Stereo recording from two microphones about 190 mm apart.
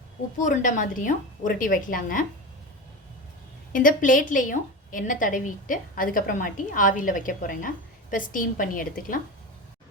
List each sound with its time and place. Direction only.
0.4 s a woman's voice: 40° left (ahead or behind)
3.7 s a woman's voice: 45° left (ahead or behind)